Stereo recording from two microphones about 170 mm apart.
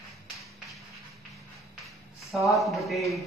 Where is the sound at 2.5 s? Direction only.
Centre (ahead or behind).